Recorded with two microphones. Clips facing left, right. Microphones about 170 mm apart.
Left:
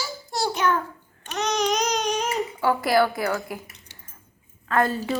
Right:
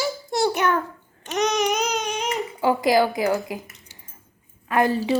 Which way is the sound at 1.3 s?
15° right (ahead or behind).